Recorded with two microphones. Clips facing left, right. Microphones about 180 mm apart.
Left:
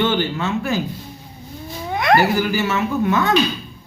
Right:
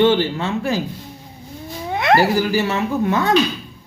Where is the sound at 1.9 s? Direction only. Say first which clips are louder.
Right 1 dB; 25° right (ahead or behind).